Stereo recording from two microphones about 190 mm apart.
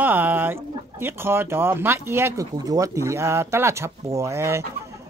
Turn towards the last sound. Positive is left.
turn(degrees=-15)  # may be behind; listen again after turning